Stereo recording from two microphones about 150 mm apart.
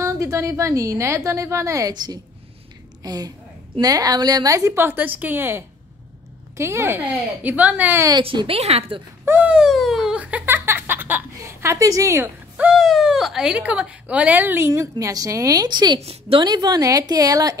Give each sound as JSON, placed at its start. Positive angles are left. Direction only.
{"t": 0.0, "sound": "a woman's voice", "side_deg": -20}
{"t": 8.1, "sound": "speech", "side_deg": -30}
{"t": 9.2, "sound": "giggle", "side_deg": -10}
{"t": 12.5, "sound": "speech", "side_deg": -5}
{"t": 16.0, "sound": "speech", "side_deg": -40}
{"t": 16.4, "sound": "a woman's voice", "side_deg": -25}